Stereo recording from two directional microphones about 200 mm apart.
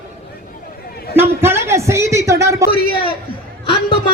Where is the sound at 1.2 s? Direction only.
10° right (ahead or behind).